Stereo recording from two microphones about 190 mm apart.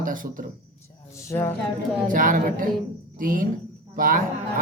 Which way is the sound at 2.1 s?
45° right (ahead or behind).